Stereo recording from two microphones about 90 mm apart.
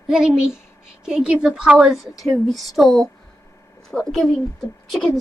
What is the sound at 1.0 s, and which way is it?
A woman's voice, 10° right (ahead or behind).